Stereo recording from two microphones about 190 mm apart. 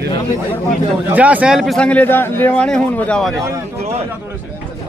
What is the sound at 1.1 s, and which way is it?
A man's voice, 5° right (ahead or behind).